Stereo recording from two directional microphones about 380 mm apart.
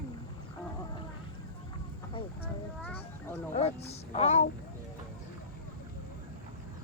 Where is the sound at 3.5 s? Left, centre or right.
Centre.